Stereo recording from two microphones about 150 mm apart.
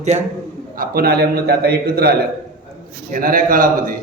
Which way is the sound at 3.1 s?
70° right (ahead or behind).